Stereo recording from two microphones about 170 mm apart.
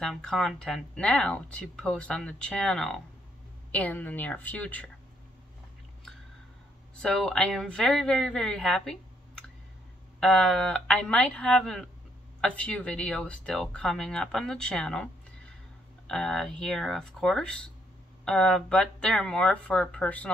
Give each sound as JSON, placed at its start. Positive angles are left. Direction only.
{"t": 0.0, "sound": "a woman's voice", "side_deg": 5}
{"t": 7.0, "sound": "speech", "side_deg": 5}
{"t": 16.1, "sound": "speech", "side_deg": 5}